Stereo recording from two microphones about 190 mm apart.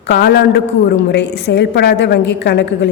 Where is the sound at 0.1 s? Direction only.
55° left (ahead or behind).